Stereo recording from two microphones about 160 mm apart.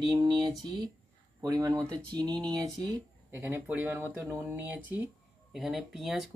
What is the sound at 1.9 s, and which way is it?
Speech, 25° right (ahead or behind).